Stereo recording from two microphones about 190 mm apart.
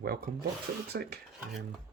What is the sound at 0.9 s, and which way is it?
Speech, 55° right (ahead or behind).